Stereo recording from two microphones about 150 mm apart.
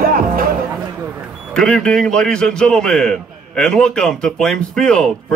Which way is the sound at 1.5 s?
5° left (ahead or behind).